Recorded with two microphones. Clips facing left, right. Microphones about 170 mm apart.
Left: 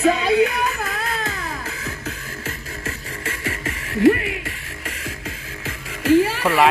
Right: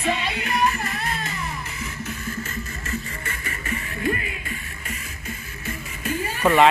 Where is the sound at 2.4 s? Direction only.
90° left.